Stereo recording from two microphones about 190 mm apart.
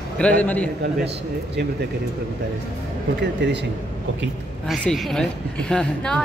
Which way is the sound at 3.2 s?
65° right (ahead or behind).